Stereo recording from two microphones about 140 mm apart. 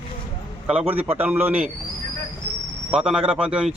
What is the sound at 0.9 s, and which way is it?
Speech, 10° right (ahead or behind).